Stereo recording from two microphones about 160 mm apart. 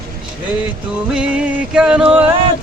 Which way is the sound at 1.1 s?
5° right (ahead or behind).